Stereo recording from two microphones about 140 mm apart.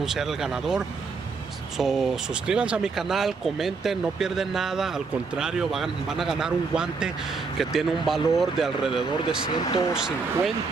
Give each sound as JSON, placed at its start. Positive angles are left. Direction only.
{"t": 0.0, "sound": "speech", "side_deg": -5}
{"t": 9.5, "sound": "speech", "side_deg": 30}